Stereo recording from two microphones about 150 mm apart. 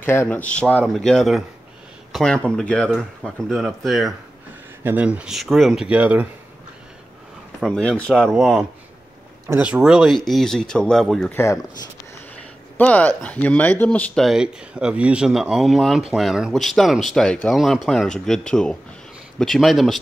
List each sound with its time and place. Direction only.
0.0 s speech: 15° left (ahead or behind); by 6.2 s 10° right (ahead or behind)
7.6 s speech: 5° left (ahead or behind)
11.3 s speech: 20° left (ahead or behind)
12.7 s speech: 10° left (ahead or behind)